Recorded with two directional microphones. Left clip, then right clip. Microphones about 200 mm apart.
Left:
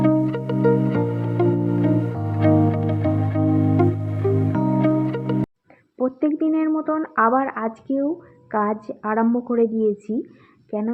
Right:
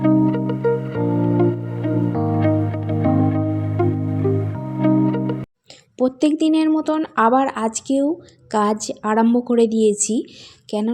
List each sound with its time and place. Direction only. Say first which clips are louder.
0.0 s music: right 2 dB; centre (ahead or behind)
6.0 s speech: right 4 dB; 35° right (ahead or behind)